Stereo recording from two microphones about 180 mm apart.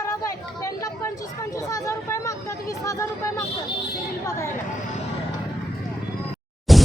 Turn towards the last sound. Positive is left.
turn(degrees=0)  # may be behind; listen again after turning